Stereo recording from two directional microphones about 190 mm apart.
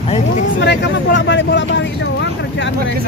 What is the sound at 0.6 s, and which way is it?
Speech, 65° left (ahead or behind).